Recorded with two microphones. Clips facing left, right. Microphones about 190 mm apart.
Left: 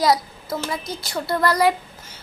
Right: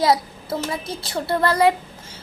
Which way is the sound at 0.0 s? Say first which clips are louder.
Even; 25° right (ahead or behind).